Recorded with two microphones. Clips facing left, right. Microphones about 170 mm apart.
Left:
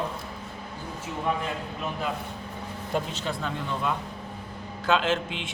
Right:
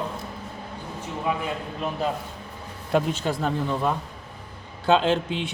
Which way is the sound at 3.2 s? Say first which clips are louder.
Right 6 dB; 40° right (ahead or behind).